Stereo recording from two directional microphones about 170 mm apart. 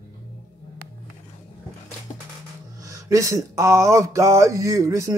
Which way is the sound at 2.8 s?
20° right (ahead or behind).